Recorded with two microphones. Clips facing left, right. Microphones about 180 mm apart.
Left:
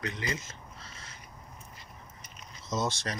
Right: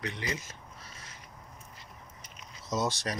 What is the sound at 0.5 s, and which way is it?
Crow, 15° right (ahead or behind).